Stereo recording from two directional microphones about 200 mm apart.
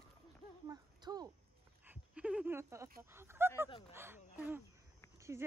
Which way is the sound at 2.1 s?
5° right (ahead or behind).